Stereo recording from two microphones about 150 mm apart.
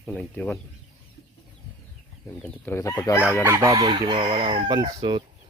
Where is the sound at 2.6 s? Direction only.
15° left (ahead or behind).